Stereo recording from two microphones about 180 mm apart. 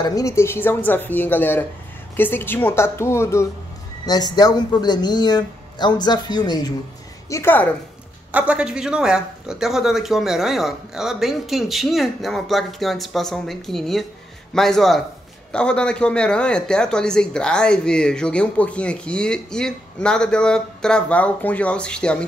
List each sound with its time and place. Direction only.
0.0 s a woman's voice: 20° left (ahead or behind)
8.3 s a man's voice: 10° right (ahead or behind)